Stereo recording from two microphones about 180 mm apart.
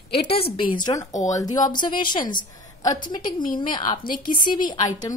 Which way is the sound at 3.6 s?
25° left (ahead or behind).